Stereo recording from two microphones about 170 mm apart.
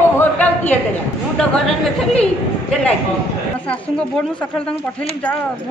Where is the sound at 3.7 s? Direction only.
5° left (ahead or behind).